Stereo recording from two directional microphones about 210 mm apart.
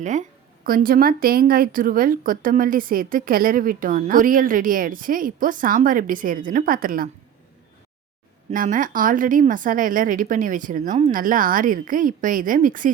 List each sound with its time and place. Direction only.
0.0 s speech: 35° right (ahead or behind)
8.4 s speech: 40° right (ahead or behind)